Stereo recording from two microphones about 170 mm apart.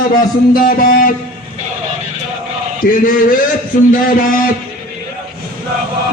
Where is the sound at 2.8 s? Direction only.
55° left (ahead or behind).